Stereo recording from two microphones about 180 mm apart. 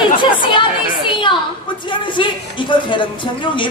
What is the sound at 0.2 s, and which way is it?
Chatter, 25° left (ahead or behind).